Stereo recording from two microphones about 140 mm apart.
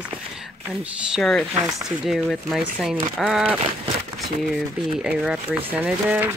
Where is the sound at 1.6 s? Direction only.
25° right (ahead or behind).